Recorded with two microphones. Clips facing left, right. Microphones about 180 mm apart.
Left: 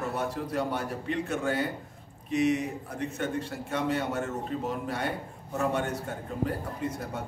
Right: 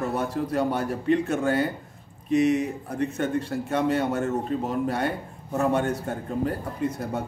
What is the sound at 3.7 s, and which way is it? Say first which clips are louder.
Speech: right 5 dB; 40° right (ahead or behind).